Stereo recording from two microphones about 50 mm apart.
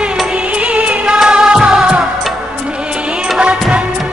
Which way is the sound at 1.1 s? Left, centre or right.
Centre.